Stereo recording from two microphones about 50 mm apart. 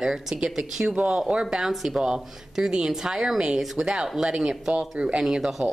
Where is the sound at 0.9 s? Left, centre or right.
Right.